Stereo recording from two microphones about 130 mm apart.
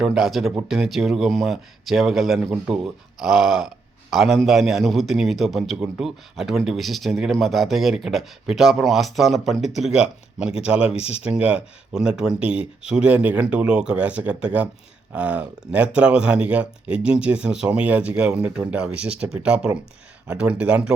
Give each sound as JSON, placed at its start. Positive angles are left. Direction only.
{"t": 0.0, "sound": "a man's voice", "side_deg": -5}
{"t": 10.9, "sound": "speech", "side_deg": 50}
{"t": 11.2, "sound": "speech", "side_deg": -10}